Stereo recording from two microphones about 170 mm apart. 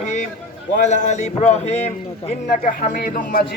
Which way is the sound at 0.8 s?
45° left (ahead or behind).